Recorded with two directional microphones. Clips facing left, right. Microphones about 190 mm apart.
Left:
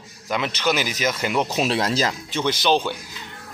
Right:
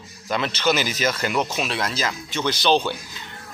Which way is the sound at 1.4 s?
35° left (ahead or behind).